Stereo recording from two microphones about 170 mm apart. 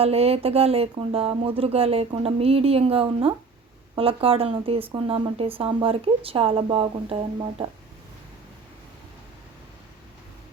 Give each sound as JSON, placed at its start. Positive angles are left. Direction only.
{"t": 0.0, "sound": "speech", "side_deg": -35}